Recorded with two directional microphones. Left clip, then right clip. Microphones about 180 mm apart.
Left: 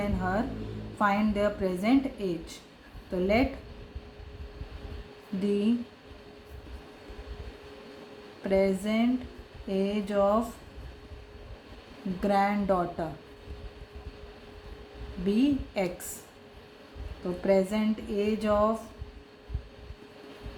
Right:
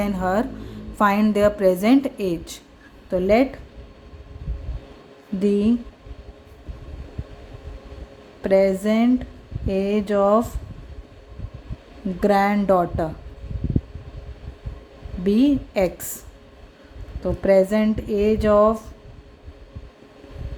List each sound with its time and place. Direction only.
0.0 s a woman's voice: 60° right (ahead or behind)
3.1 s speech: 50° right (ahead or behind)
5.4 s speech: 50° right (ahead or behind)
8.4 s speech: 50° right (ahead or behind)
12.2 s speech: 50° right (ahead or behind)
15.3 s speech: 50° right (ahead or behind)
17.4 s speech: 50° right (ahead or behind)